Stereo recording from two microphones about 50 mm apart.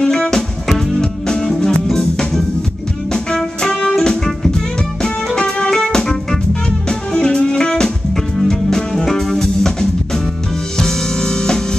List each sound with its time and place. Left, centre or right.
0.0 s music: centre